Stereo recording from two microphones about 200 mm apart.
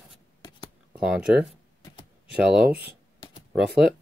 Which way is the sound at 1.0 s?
5° right (ahead or behind).